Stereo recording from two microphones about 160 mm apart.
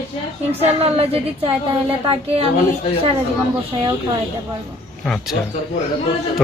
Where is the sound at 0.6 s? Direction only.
40° right (ahead or behind).